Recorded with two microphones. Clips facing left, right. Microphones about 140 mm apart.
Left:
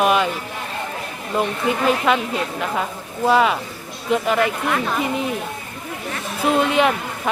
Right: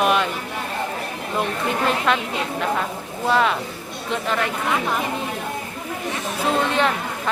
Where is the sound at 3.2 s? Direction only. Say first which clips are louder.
Left 3 dB; 5° left (ahead or behind).